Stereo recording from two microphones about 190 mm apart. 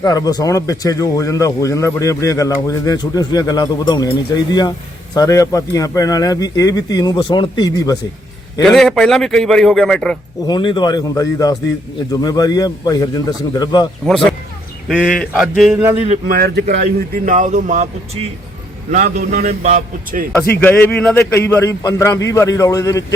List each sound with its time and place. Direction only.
0.0 s speech: 20° left (ahead or behind)
8.6 s a man's voice: centre (ahead or behind)
10.4 s speech: 25° left (ahead or behind)
14.0 s a man's voice: centre (ahead or behind)
16.2 s speech: 50° right (ahead or behind)
20.6 s a man's voice: 10° left (ahead or behind)